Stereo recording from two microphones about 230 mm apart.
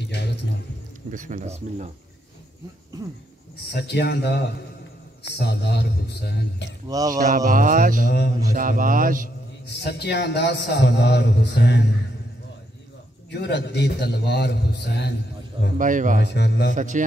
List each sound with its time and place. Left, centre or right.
0.1 s a sound: left
1.1 s speech: right
3.6 s a man's voice: left
6.9 s speech: centre
7.2 s speech: right
9.7 s a man's voice: left
13.3 s a man's voice: left
15.8 s speech: right
16.2 s a man's voice: left
16.7 s speech: right